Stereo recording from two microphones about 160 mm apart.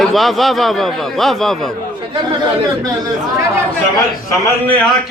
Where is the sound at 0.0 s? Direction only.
Centre (ahead or behind).